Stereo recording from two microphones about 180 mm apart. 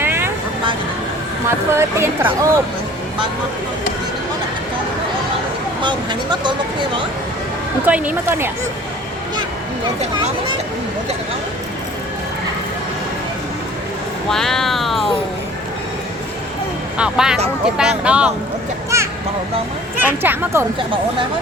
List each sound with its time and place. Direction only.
0.0 s vehicle: 10° right (ahead or behind)
1.5 s speech: 15° right (ahead or behind)
5.8 s speech: 25° right (ahead or behind)
7.9 s speech: 10° right (ahead or behind)
14.3 s speech: centre (ahead or behind)
17.0 s speech: 5° right (ahead or behind)
20.0 s speech: 10° right (ahead or behind)